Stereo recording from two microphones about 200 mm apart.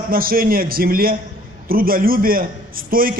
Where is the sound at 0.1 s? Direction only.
45° right (ahead or behind).